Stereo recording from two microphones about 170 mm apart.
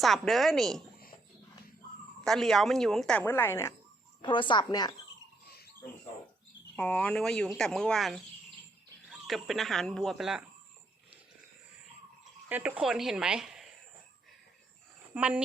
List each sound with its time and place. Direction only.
0.0 s speech: centre (ahead or behind)
2.2 s speech: 5° left (ahead or behind)
4.2 s a woman's voice: 30° left (ahead or behind)
6.7 s speech: 5° left (ahead or behind)
12.5 s speech: 10° right (ahead or behind)
15.1 s speech: 10° right (ahead or behind)